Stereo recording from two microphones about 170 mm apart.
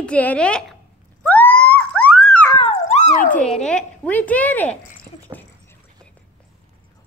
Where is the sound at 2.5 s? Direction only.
30° left (ahead or behind).